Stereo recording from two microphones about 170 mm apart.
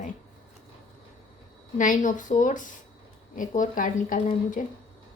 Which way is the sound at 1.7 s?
50° left (ahead or behind).